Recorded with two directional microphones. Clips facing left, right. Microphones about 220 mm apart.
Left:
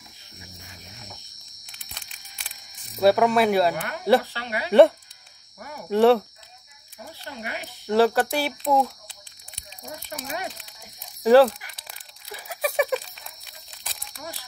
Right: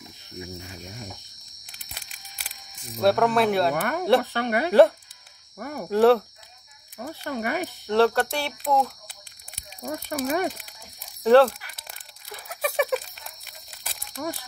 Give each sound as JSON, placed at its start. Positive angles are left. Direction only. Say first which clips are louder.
{"t": 1.7, "sound": "a sound", "louder": "right 1 dB", "side_deg": -5}
{"t": 3.0, "sound": "speech", "louder": "left 2 dB", "side_deg": 0}
{"t": 3.7, "sound": "speech", "louder": "even", "side_deg": -55}
{"t": 5.9, "sound": "speech", "louder": "even", "side_deg": 0}
{"t": 7.0, "sound": "speech", "louder": "right 8 dB", "side_deg": -55}
{"t": 7.8, "sound": "speech", "louder": "left 1 dB", "side_deg": 5}
{"t": 9.8, "sound": "speech", "louder": "right 9 dB", "side_deg": -50}
{"t": 11.2, "sound": "crumpling", "louder": "left 1 dB", "side_deg": 5}
{"t": 14.2, "sound": "speech", "louder": "right 8 dB", "side_deg": -75}